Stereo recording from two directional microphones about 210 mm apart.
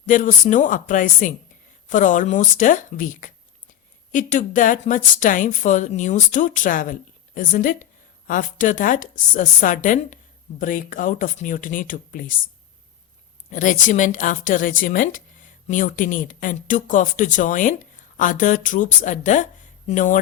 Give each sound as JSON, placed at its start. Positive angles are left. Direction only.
{"t": 0.1, "sound": "speech", "side_deg": 40}
{"t": 13.5, "sound": "speech", "side_deg": 40}